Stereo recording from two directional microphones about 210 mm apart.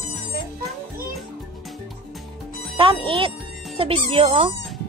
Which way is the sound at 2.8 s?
25° right (ahead or behind).